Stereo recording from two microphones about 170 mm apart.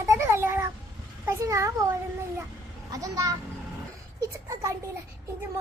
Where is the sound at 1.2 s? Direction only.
15° right (ahead or behind).